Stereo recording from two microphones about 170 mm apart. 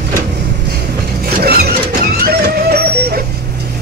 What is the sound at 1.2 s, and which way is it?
Printer, 65° right (ahead or behind).